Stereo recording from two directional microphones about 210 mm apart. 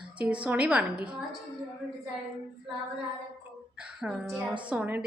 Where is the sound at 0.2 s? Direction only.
5° right (ahead or behind).